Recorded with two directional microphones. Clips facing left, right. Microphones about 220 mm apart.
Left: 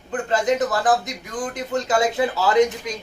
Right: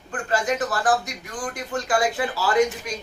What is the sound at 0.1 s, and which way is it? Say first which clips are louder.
A woman's voice: left 4 dB; 20° left (ahead or behind).